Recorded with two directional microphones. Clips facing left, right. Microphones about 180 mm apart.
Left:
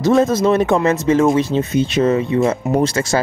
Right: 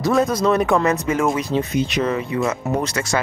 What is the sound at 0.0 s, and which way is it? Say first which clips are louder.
Speech: left 4 dB; 25° left (ahead or behind).